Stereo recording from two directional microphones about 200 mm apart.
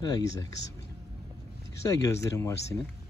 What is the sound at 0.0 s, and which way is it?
Speech, 15° left (ahead or behind).